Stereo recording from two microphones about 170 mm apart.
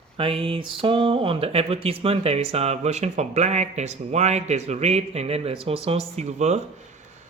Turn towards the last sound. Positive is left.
turn(degrees=-40)  # may be behind; listen again after turning